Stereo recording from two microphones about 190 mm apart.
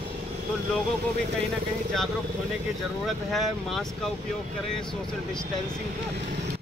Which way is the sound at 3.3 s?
Centre (ahead or behind).